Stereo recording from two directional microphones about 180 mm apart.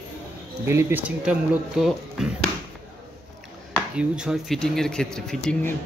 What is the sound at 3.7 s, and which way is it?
Speech, 5° right (ahead or behind).